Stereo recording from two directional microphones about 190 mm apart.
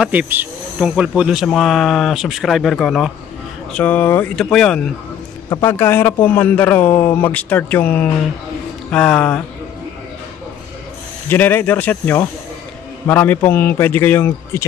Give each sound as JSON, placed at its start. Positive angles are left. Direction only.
{"t": 0.0, "sound": "speech", "side_deg": -10}
{"t": 5.5, "sound": "speech", "side_deg": 15}
{"t": 11.2, "sound": "speech", "side_deg": 10}